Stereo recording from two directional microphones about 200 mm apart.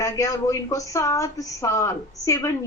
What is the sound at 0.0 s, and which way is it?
A woman's voice, 15° left (ahead or behind).